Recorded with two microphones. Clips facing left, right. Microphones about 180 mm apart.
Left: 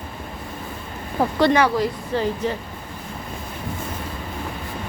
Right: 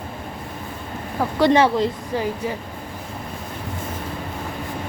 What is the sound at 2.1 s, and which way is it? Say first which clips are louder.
Speech: left 4 dB; 10° right (ahead or behind).